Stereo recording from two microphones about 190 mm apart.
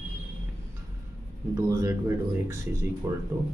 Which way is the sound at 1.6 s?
15° right (ahead or behind).